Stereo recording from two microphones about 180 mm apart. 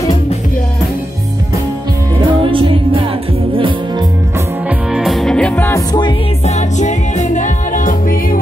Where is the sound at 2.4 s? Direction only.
30° right (ahead or behind).